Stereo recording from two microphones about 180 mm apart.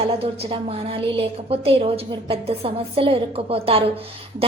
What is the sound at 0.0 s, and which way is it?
A woman's voice, 30° right (ahead or behind).